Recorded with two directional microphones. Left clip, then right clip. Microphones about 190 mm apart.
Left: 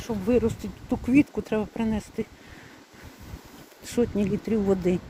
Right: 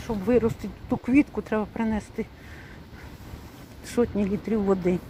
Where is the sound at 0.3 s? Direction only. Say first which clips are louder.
Right 2 dB; 5° left (ahead or behind).